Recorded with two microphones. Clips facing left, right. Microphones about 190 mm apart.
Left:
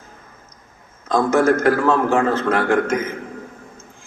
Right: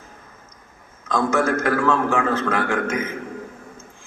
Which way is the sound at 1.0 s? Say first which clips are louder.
Left 5 dB; 40° left (ahead or behind).